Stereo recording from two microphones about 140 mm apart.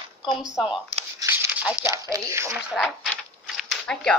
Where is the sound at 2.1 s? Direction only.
20° right (ahead or behind).